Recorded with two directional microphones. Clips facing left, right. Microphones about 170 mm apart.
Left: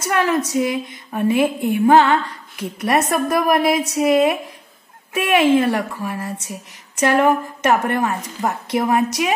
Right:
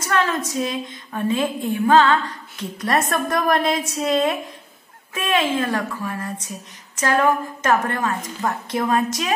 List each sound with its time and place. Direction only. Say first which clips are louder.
0.1 s a woman's voice: left 3 dB; 15° left (ahead or behind)